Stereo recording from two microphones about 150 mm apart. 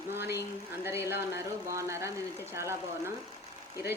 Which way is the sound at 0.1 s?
15° right (ahead or behind).